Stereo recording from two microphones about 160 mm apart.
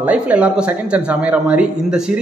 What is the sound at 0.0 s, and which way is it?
A man's voice, 10° right (ahead or behind).